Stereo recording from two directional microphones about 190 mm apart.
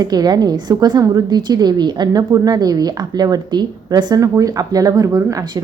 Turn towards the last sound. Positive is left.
turn(degrees=-15)  # may be behind; listen again after turning